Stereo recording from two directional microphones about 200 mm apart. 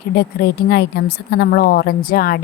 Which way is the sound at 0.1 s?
55° left (ahead or behind).